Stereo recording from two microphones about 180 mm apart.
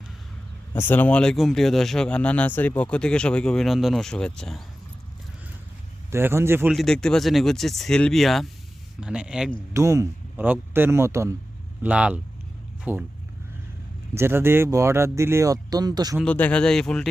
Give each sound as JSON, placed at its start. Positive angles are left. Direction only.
{"t": 0.7, "sound": "a man's voice", "side_deg": 10}
{"t": 6.1, "sound": "speech", "side_deg": -15}
{"t": 6.7, "sound": "a man's voice", "side_deg": 5}
{"t": 9.7, "sound": "speech", "side_deg": -15}
{"t": 14.2, "sound": "speech", "side_deg": -15}
{"t": 16.2, "sound": "a man's voice", "side_deg": 5}